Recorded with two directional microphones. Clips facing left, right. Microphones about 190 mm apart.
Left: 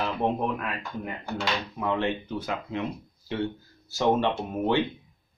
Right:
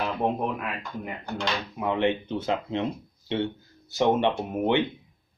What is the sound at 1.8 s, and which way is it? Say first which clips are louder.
Speech: right 4 dB; 15° right (ahead or behind).